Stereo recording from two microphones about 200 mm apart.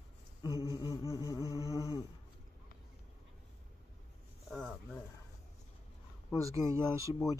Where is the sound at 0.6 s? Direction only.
20° left (ahead or behind).